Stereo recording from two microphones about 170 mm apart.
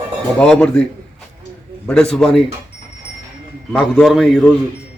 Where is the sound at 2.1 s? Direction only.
Centre (ahead or behind).